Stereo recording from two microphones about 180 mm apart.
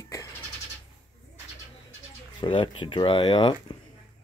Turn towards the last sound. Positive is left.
turn(degrees=25)  # may be behind; listen again after turning